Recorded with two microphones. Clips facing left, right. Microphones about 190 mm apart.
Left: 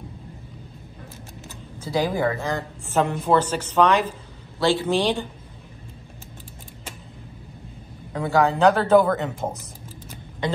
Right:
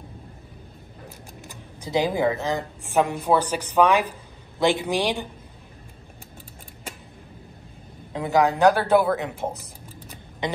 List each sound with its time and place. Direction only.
1.8 s a woman's voice: 20° right (ahead or behind)
8.1 s a woman's voice: 20° right (ahead or behind)
10.4 s throat clearing: 20° right (ahead or behind)